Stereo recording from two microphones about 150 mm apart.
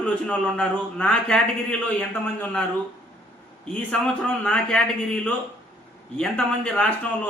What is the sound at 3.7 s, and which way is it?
A man's voice, 5° left (ahead or behind).